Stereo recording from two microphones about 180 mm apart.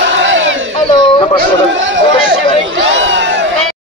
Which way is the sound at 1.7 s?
90° right.